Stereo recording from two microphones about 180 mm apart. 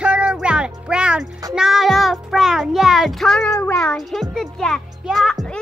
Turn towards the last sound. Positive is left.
turn(degrees=5)  # may be behind; listen again after turning